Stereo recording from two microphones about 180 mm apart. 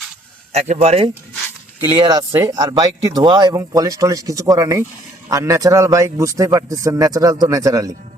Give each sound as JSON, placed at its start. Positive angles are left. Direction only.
{"t": 0.5, "sound": "speech", "side_deg": -35}
{"t": 1.9, "sound": "speech", "side_deg": -25}